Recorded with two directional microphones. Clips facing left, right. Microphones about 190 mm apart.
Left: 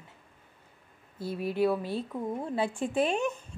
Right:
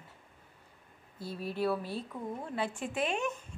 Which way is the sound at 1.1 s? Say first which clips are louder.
Left 6 dB; centre (ahead or behind).